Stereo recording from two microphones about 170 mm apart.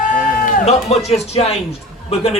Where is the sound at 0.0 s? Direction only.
55° left (ahead or behind).